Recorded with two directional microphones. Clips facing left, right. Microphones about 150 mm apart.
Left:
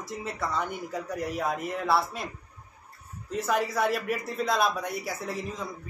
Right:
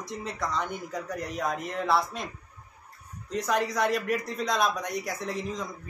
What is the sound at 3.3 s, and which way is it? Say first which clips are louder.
A man's voice: even; 5° left (ahead or behind).